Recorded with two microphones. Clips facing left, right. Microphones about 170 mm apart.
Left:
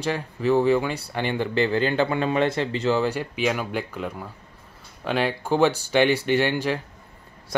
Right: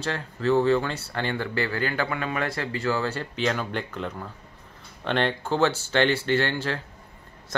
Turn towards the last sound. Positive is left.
turn(degrees=15)  # may be behind; listen again after turning